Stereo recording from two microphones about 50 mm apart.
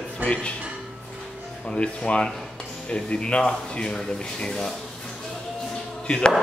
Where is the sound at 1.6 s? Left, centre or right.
Left.